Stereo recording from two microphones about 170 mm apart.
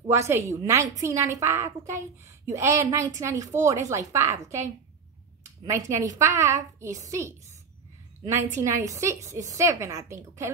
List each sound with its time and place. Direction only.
0.0 s a woman's voice: 15° right (ahead or behind)